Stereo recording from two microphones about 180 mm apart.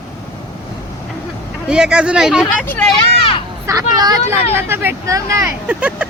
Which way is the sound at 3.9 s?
20° right (ahead or behind).